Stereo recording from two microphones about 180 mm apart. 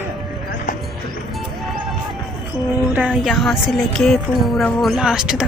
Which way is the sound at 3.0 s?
Centre (ahead or behind).